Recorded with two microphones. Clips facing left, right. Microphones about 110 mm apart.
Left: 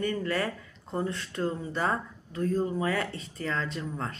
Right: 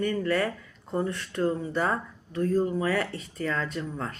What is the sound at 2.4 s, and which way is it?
Speech, 40° right (ahead or behind).